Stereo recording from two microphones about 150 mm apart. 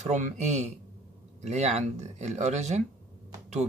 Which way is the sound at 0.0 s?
50° right (ahead or behind).